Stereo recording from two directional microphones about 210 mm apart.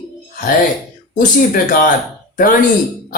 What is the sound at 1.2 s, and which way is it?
Speech, 40° left (ahead or behind).